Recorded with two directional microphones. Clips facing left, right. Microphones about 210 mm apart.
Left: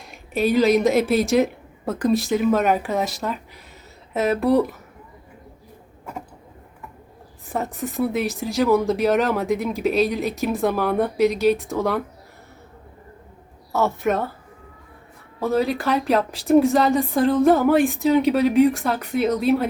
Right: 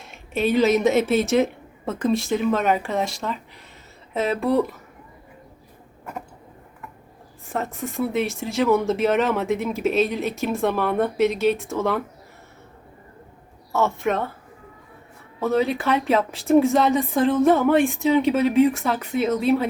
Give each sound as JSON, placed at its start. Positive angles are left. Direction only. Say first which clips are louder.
{"t": 0.5, "sound": "speech", "louder": "left 1 dB", "side_deg": 0}
{"t": 7.4, "sound": "speech", "louder": "left 1 dB", "side_deg": 0}
{"t": 13.7, "sound": "speech", "louder": "left 1 dB", "side_deg": 0}
{"t": 15.4, "sound": "speech", "louder": "even", "side_deg": 0}